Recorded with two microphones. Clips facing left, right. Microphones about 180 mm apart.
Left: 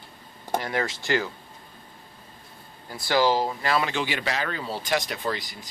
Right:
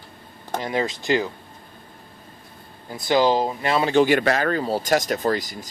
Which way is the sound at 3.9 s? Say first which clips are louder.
Right 11 dB; 50° right (ahead or behind).